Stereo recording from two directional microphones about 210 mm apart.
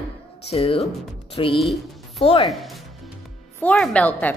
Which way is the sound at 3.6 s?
5° left (ahead or behind).